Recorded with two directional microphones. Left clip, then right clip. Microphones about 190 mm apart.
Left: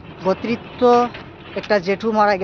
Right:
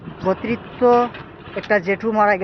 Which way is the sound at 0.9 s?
15° left (ahead or behind).